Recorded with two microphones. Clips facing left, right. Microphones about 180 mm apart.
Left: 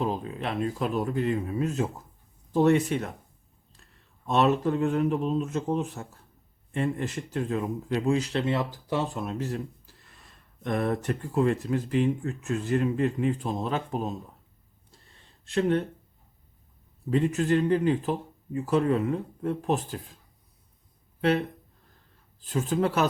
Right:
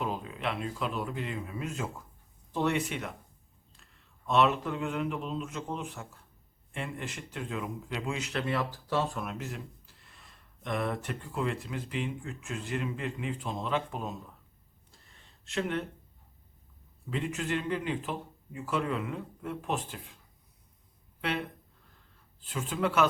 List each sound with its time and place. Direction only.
0.0 s a man's voice: 35° left (ahead or behind)
4.3 s speech: 40° left (ahead or behind)
15.4 s speech: 35° left (ahead or behind)
17.1 s speech: 40° left (ahead or behind)
21.2 s speech: 40° left (ahead or behind)
22.4 s speech: 40° left (ahead or behind)